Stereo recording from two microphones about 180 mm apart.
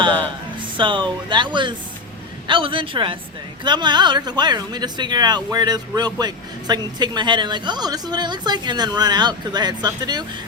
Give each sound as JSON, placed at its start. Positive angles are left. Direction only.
{"t": 0.8, "sound": "speech", "side_deg": -25}